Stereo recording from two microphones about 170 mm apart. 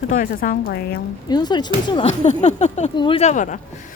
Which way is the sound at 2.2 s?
40° left (ahead or behind).